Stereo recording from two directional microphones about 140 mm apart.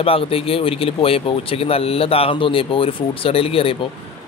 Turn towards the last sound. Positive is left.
turn(degrees=40)  # may be behind; listen again after turning